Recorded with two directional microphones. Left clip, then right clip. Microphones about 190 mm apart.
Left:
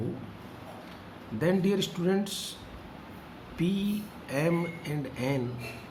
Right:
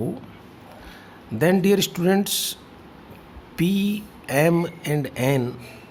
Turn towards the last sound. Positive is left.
turn(degrees=-60)  # may be behind; listen again after turning